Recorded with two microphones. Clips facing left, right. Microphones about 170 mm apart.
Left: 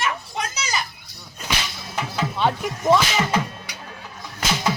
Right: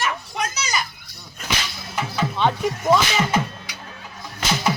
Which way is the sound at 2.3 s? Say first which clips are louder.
Right 1 dB; 5° left (ahead or behind).